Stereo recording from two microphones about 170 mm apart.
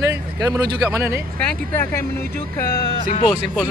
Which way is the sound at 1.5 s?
10° left (ahead or behind).